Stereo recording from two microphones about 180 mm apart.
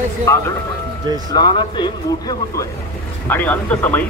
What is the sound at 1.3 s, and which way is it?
Speech, 25° left (ahead or behind).